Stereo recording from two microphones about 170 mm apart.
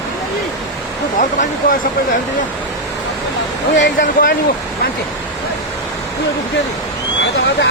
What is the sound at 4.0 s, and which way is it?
Speech, 55° left (ahead or behind).